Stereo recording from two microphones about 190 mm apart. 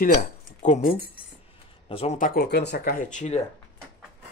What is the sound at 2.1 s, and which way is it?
Speech, 50° left (ahead or behind).